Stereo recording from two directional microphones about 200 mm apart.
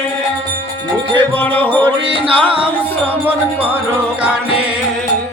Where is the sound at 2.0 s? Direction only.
25° right (ahead or behind).